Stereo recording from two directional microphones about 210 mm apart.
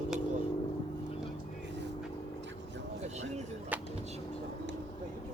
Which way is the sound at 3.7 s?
5° right (ahead or behind).